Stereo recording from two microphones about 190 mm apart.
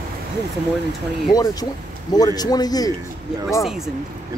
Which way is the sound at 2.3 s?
20° left (ahead or behind).